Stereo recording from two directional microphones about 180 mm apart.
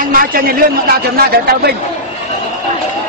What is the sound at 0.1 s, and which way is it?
A man's voice, 55° right (ahead or behind).